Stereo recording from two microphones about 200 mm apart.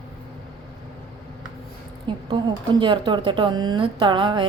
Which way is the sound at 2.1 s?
25° right (ahead or behind).